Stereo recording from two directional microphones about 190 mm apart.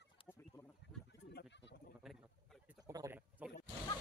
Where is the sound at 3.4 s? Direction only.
5° right (ahead or behind).